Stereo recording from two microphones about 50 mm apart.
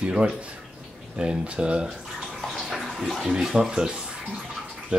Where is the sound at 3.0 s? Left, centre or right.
Centre.